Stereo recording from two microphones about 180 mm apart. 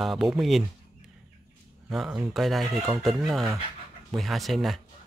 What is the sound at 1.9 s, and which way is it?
Speech, 5° right (ahead or behind).